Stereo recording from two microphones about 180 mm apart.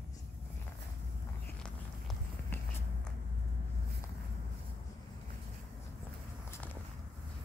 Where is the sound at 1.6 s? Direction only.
5° left (ahead or behind).